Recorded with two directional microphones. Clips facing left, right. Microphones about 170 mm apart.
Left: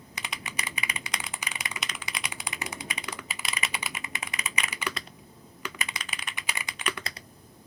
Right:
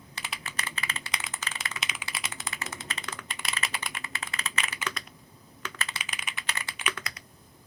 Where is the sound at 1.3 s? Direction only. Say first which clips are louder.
Left 1 dB; 15° left (ahead or behind).